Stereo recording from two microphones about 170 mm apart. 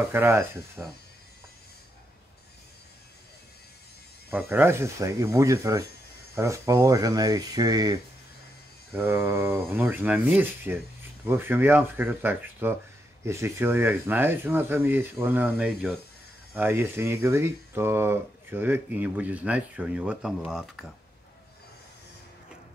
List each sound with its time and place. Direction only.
0.1 s speech: 15° right (ahead or behind)
4.3 s speech: 10° right (ahead or behind)
8.9 s speech: 10° right (ahead or behind)